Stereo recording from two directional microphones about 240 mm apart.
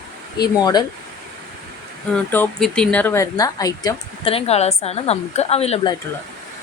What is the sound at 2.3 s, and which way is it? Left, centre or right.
A woman's voice, centre.